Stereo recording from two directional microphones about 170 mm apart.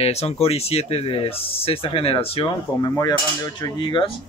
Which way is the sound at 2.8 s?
20° left (ahead or behind).